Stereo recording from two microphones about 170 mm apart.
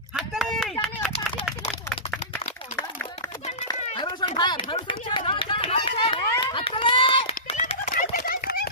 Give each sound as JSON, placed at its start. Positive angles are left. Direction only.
{"t": 0.2, "sound": "a sound", "side_deg": 0}
{"t": 3.7, "sound": "run", "side_deg": 25}
{"t": 7.5, "sound": "bird", "side_deg": 45}